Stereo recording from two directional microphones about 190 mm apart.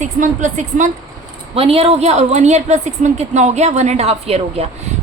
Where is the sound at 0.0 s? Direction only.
40° right (ahead or behind).